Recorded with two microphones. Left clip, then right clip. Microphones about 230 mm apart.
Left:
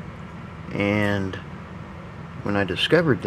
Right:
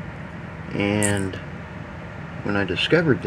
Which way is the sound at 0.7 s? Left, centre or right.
Centre.